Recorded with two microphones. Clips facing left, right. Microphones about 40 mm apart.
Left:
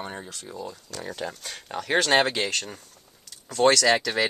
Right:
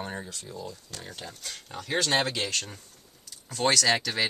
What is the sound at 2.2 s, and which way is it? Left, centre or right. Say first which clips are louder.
Speech: left 4 dB; left.